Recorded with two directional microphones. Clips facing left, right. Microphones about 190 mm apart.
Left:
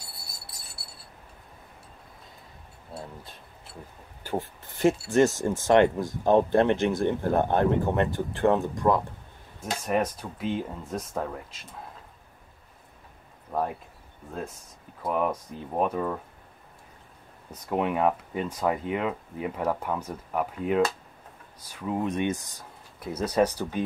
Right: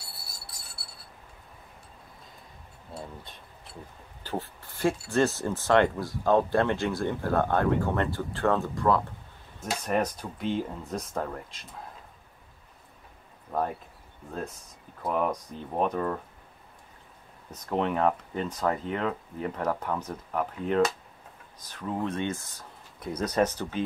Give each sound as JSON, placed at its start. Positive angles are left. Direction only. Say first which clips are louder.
{"t": 2.9, "sound": "a sound", "louder": "left 1 dB", "side_deg": 0}
{"t": 4.2, "sound": "speech", "louder": "left 3 dB", "side_deg": 15}
{"t": 9.7, "sound": "speech", "louder": "left 1 dB", "side_deg": 0}
{"t": 13.5, "sound": "speech", "louder": "left 1 dB", "side_deg": 5}
{"t": 15.0, "sound": "speech", "louder": "left 1 dB", "side_deg": 5}
{"t": 17.5, "sound": "speech", "louder": "left 1 dB", "side_deg": 10}